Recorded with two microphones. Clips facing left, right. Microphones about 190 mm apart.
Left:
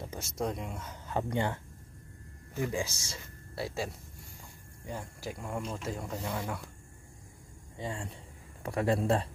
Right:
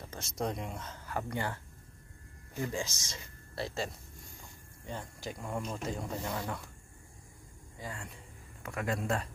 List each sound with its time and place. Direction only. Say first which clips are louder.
0.1 s speech: even; 5° left (ahead or behind)
0.9 s speech: left 6 dB; 20° left (ahead or behind)
2.6 s speech: left 3 dB; 15° left (ahead or behind)
7.7 s a man's voice: left 5 dB; 25° left (ahead or behind)